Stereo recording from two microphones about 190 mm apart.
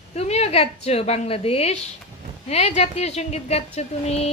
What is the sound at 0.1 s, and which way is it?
Speech, 35° left (ahead or behind).